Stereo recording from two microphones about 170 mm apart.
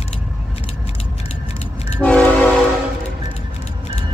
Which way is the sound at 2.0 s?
5° left (ahead or behind).